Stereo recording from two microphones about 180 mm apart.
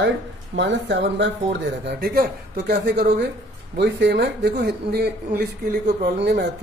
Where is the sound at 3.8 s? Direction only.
70° right (ahead or behind).